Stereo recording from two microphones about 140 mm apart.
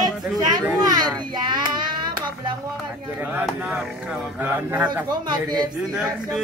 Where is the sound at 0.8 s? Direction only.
30° right (ahead or behind).